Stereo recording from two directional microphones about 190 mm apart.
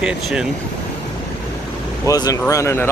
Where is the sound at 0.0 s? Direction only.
5° right (ahead or behind).